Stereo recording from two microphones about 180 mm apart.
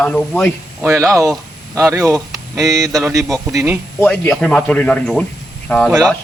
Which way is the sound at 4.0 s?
10° left (ahead or behind).